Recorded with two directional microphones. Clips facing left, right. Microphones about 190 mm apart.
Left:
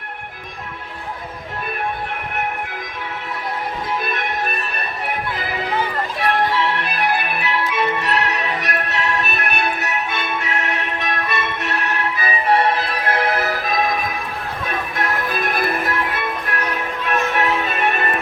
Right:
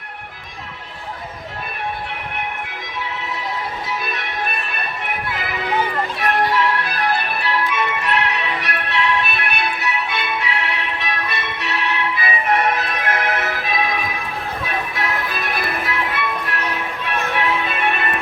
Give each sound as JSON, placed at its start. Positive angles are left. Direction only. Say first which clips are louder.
{"t": 3.8, "sound": "music", "louder": "left 3 dB", "side_deg": 50}
{"t": 7.8, "sound": "music", "louder": "left 1 dB", "side_deg": 40}